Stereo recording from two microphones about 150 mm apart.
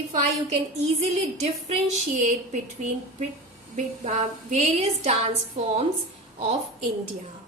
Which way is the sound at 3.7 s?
50° right (ahead or behind).